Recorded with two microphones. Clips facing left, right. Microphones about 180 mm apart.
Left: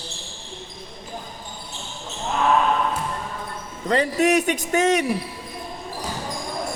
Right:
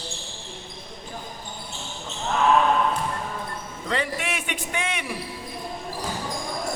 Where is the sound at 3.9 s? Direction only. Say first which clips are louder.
Left 10 dB; 40° left (ahead or behind).